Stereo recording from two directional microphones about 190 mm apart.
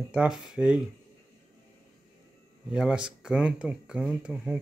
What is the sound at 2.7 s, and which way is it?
Speech, 5° right (ahead or behind).